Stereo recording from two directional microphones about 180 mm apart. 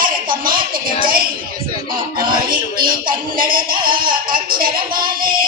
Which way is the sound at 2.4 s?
55° right (ahead or behind).